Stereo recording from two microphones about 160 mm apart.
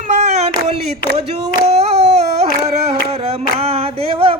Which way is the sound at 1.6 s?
40° right (ahead or behind).